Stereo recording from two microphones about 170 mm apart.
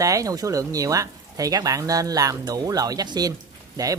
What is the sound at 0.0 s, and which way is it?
Speech, 20° right (ahead or behind).